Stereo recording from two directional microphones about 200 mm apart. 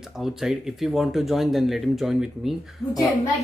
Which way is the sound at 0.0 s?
Centre (ahead or behind).